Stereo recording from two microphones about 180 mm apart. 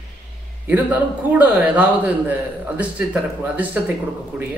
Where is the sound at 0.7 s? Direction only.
10° right (ahead or behind).